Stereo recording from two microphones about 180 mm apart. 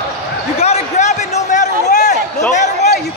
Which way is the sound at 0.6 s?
35° left (ahead or behind).